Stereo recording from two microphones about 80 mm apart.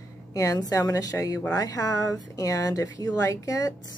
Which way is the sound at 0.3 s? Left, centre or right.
Left.